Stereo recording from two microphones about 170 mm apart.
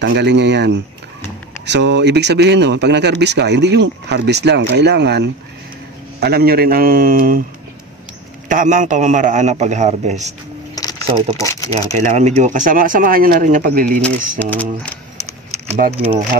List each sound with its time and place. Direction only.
0.0 s speech: 85° right
6.1 s a man's voice: 70° right (ahead or behind)
8.5 s speech: 50° right (ahead or behind)
10.7 s a sound: 20° left (ahead or behind)
11.3 s speech: 20° left (ahead or behind)
12.0 s speech: 45° right (ahead or behind)
14.4 s speech: 10° left (ahead or behind)